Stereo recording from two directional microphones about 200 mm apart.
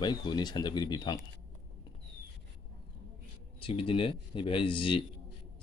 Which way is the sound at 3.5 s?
30° left (ahead or behind).